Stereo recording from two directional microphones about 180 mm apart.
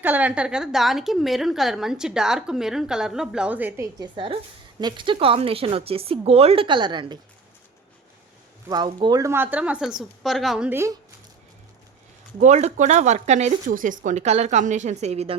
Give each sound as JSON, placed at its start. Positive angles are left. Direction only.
{"t": 0.0, "sound": "a woman's voice", "side_deg": -10}
{"t": 4.0, "sound": "speech", "side_deg": -30}
{"t": 8.7, "sound": "a woman's voice", "side_deg": -25}
{"t": 12.4, "sound": "speech", "side_deg": -40}